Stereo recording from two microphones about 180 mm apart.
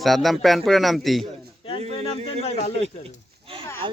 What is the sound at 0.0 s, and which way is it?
A man's voice, centre (ahead or behind).